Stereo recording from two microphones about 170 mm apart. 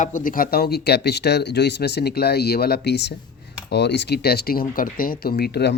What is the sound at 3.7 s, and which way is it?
Speech, 90° left.